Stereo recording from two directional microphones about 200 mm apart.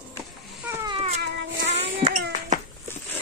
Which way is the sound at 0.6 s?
10° right (ahead or behind).